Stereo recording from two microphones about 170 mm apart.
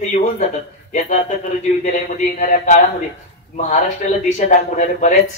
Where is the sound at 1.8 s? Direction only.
45° left (ahead or behind).